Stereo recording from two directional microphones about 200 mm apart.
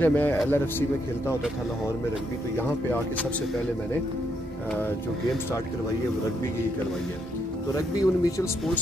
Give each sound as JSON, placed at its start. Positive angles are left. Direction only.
{"t": 0.0, "sound": "a man's voice", "side_deg": 10}
{"t": 7.7, "sound": "a man's voice", "side_deg": 20}